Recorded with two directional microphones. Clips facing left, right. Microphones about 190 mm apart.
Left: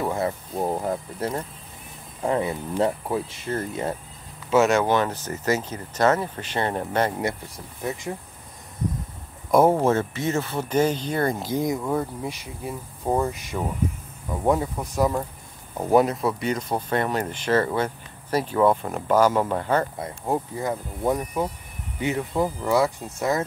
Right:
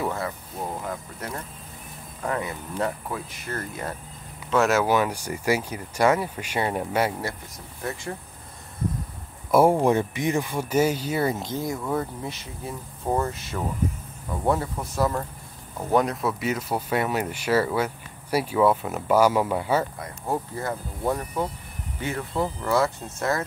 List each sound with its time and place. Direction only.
0.6 s speech: 30° left (ahead or behind)
4.5 s speech: centre (ahead or behind)
7.2 s speech: 20° left (ahead or behind)
9.5 s speech: 10° right (ahead or behind)
11.4 s speech: 15° left (ahead or behind)
11.9 s speech: 5° left (ahead or behind)
20.0 s speech: 15° left (ahead or behind)